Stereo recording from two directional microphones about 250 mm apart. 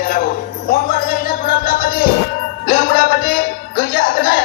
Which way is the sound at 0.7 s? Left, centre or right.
Left.